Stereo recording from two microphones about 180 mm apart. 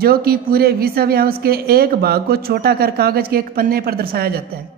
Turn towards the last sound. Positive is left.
turn(degrees=-55)  # may be behind; listen again after turning